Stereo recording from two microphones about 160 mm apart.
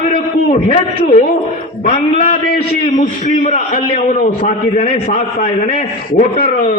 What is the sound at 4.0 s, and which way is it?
A man's voice, 50° left (ahead or behind).